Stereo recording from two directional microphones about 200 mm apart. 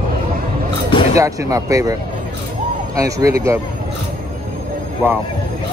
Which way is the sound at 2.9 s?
15° right (ahead or behind).